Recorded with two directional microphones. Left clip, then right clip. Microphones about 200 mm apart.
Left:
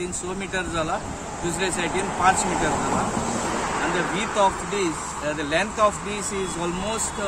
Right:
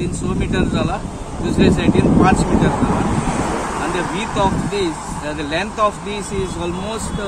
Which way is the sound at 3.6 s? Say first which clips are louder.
Right 3 dB; 60° right (ahead or behind).